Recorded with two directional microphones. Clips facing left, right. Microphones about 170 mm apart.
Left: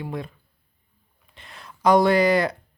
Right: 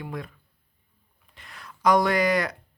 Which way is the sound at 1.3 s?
25° left (ahead or behind).